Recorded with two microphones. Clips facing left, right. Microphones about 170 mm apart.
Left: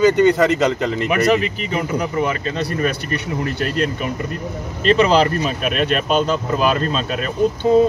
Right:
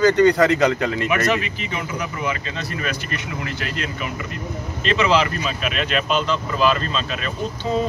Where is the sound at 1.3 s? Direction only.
40° left (ahead or behind).